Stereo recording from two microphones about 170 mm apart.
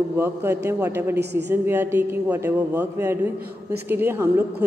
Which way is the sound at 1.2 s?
75° right (ahead or behind).